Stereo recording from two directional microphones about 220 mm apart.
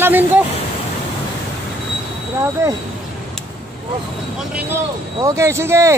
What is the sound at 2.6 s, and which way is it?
Speech, 15° right (ahead or behind).